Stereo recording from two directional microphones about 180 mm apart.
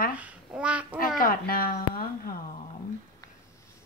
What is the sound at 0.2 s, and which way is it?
Babbling, 5° right (ahead or behind).